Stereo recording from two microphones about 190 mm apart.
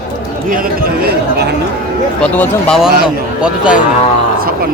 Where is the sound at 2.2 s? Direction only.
5° left (ahead or behind).